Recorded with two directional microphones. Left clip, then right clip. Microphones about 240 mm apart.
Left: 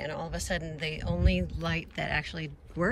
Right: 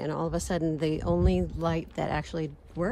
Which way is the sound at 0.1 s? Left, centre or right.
Centre.